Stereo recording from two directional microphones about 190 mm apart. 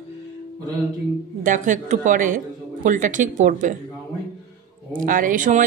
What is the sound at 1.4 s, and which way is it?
Speech, 40° right (ahead or behind).